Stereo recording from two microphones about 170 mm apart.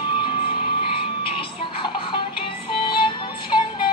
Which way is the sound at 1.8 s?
30° left (ahead or behind).